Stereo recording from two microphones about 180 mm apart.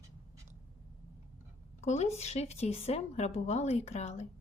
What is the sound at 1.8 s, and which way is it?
A woman's voice, 40° left (ahead or behind).